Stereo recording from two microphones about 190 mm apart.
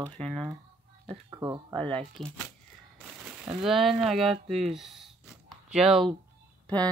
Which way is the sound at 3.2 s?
5° right (ahead or behind).